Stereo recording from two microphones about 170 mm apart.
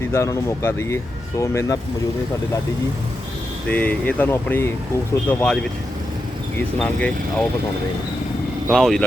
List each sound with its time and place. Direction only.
0.1 s speech: 15° left (ahead or behind)
3.7 s speech: 10° left (ahead or behind)
6.7 s speech: 5° left (ahead or behind)
8.7 s speech: centre (ahead or behind)